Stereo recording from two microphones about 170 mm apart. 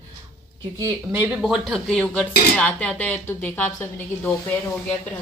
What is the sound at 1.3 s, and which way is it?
Speech, centre (ahead or behind).